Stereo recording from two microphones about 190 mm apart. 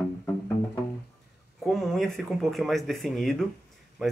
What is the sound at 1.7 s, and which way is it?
Speech, centre (ahead or behind).